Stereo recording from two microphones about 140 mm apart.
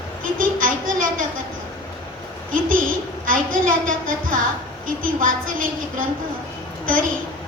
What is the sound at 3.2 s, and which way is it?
A woman's voice, 75° right (ahead or behind).